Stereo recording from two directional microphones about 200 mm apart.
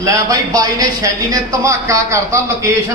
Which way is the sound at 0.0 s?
15° right (ahead or behind).